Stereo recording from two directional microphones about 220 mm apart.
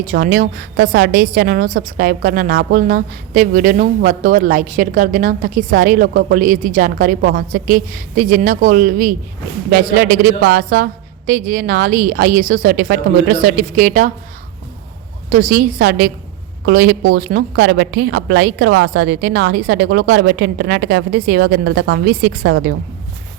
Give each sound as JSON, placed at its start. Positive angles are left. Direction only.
{"t": 0.1, "sound": "a woman's voice", "side_deg": -40}
{"t": 15.3, "sound": "a woman's voice", "side_deg": -35}